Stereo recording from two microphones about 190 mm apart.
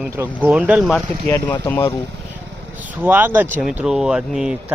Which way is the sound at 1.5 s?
15° left (ahead or behind).